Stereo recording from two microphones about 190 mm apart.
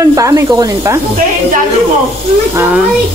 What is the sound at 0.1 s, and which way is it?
Speech, 15° right (ahead or behind).